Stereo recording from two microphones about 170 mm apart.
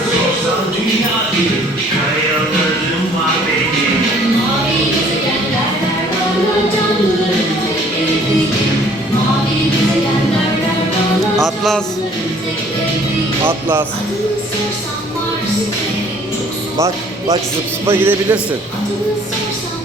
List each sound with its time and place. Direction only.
11.3 s music: centre (ahead or behind)
13.4 s a man's voice: 10° right (ahead or behind)
16.7 s music: 15° right (ahead or behind)
17.8 s a man's voice: 15° right (ahead or behind)